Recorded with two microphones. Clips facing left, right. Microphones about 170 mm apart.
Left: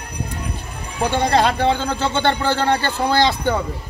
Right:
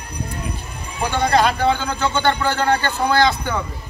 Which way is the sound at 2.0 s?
25° left (ahead or behind).